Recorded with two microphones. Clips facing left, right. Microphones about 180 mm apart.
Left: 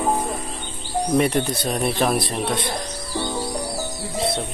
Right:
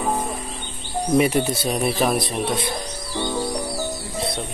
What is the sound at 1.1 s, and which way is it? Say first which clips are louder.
Speech: right 2 dB; 5° right (ahead or behind).